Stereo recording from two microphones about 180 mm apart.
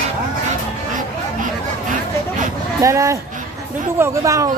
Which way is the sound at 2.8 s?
15° right (ahead or behind).